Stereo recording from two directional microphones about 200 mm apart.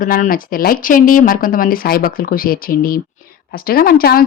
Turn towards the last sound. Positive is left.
turn(degrees=45)  # may be behind; listen again after turning